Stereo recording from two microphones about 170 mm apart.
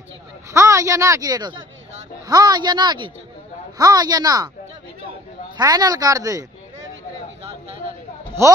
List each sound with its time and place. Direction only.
0.5 s speech: 20° right (ahead or behind)
5.6 s speech: 20° right (ahead or behind)